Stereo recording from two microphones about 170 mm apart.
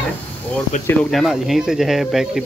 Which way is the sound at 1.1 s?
Centre (ahead or behind).